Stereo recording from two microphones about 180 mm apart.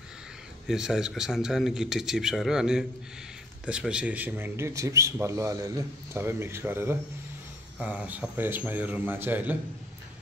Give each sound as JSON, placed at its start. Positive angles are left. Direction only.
{"t": 0.7, "sound": "a man's voice", "side_deg": -5}